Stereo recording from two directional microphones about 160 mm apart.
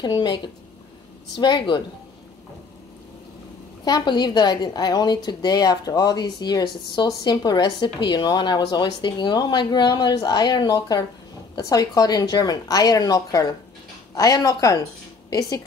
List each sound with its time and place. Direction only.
0.0 s a woman's voice: 30° left (ahead or behind)
1.4 s a woman's voice: 30° left (ahead or behind)
3.8 s a woman's voice: 25° left (ahead or behind)